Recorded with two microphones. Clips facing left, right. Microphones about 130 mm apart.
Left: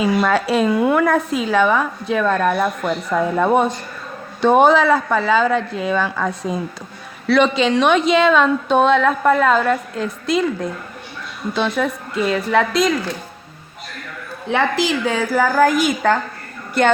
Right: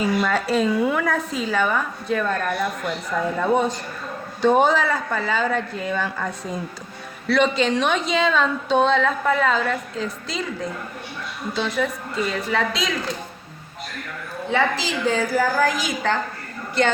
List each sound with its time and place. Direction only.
0.0 s a woman's voice: 75° left (ahead or behind); by 12.9 s 55° left (ahead or behind)
14.5 s a woman's voice: 60° left (ahead or behind)